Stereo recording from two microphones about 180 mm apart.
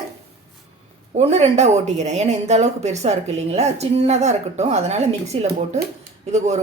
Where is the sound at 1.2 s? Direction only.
35° right (ahead or behind).